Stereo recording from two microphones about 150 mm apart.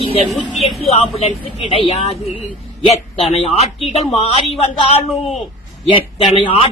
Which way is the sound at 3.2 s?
45° left (ahead or behind).